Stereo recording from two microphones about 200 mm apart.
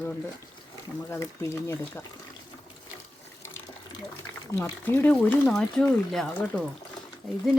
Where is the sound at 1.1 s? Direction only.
15° left (ahead or behind).